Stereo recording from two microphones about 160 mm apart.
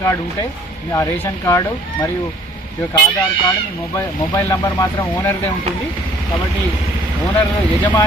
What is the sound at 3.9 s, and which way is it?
Speech, 20° left (ahead or behind).